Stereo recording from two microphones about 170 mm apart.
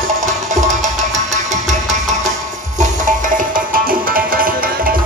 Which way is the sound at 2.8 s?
50° right (ahead or behind).